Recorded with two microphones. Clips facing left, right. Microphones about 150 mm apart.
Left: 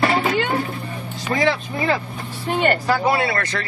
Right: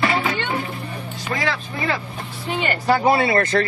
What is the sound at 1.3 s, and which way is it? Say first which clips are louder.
Speech: left 5 dB; 30° left (ahead or behind).